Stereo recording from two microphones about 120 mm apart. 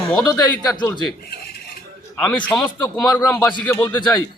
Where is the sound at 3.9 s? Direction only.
35° left (ahead or behind).